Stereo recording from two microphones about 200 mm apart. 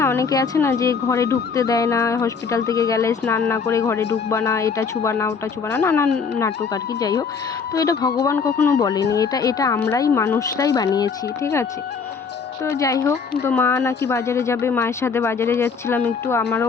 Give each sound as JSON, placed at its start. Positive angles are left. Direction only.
{"t": 0.0, "sound": "speech", "side_deg": 15}
{"t": 12.6, "sound": "speech", "side_deg": 15}